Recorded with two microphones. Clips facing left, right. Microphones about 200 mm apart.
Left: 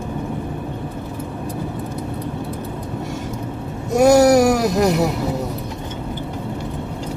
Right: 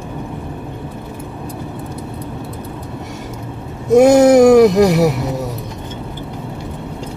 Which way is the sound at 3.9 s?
20° right (ahead or behind).